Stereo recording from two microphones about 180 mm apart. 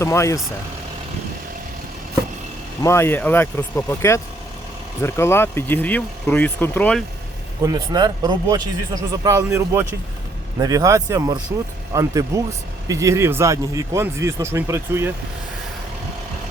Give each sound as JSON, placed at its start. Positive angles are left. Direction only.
{"t": 0.0, "sound": "speech", "side_deg": 15}
{"t": 2.8, "sound": "speech", "side_deg": 15}
{"t": 7.6, "sound": "speech", "side_deg": -20}